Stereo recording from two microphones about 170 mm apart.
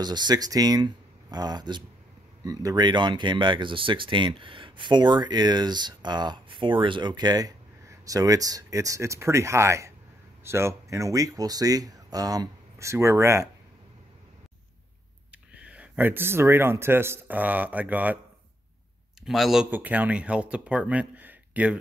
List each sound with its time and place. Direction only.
0.0 s speech: 25° right (ahead or behind)
15.5 s speech: 5° right (ahead or behind)
19.2 s speech: centre (ahead or behind)